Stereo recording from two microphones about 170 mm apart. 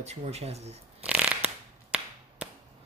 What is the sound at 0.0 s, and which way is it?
Speech, 40° right (ahead or behind).